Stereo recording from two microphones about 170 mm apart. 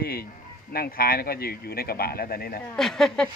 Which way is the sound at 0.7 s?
60° left (ahead or behind).